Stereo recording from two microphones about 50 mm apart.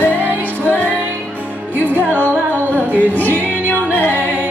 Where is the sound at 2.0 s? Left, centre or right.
Right.